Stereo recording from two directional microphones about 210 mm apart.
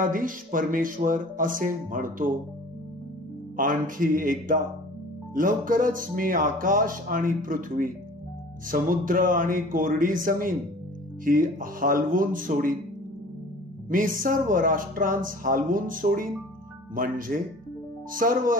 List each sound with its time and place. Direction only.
0.0 s speech: 40° right (ahead or behind)
3.5 s speech: 40° right (ahead or behind)
13.8 s speech: 40° right (ahead or behind)